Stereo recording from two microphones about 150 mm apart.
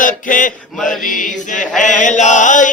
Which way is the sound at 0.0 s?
60° left (ahead or behind).